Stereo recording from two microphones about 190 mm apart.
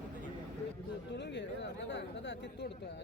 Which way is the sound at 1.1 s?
65° left (ahead or behind).